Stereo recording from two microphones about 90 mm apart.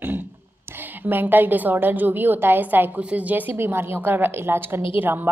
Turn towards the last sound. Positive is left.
turn(degrees=-25)  # may be behind; listen again after turning